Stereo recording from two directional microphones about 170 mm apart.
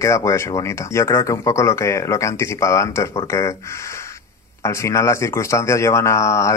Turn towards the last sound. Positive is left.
turn(degrees=15)  # may be behind; listen again after turning